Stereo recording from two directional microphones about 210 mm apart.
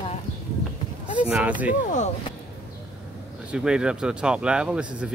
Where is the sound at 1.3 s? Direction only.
5° right (ahead or behind).